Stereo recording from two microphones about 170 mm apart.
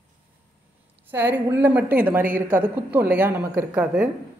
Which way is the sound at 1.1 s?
10° right (ahead or behind).